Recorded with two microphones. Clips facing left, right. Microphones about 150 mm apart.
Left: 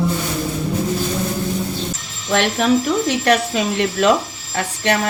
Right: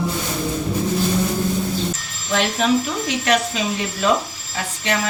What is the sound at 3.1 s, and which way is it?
Speech, 60° left (ahead or behind).